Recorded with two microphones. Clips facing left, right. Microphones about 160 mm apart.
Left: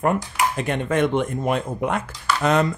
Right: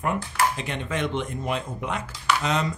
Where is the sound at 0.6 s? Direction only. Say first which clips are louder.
Left 8 dB; 50° left (ahead or behind).